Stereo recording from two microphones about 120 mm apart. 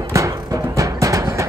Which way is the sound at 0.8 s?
25° right (ahead or behind).